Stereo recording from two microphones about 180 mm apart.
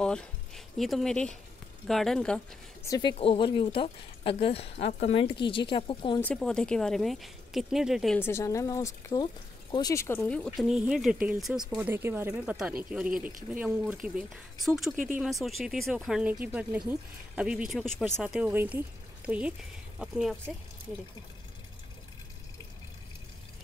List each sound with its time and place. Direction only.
0.7 s speech: centre (ahead or behind)
2.9 s speech: 25° left (ahead or behind)
6.2 s speech: 5° left (ahead or behind)
8.2 s speech: 15° left (ahead or behind); by 20.5 s 5° right (ahead or behind)